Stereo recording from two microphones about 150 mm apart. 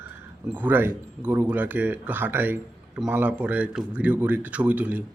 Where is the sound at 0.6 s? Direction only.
10° right (ahead or behind).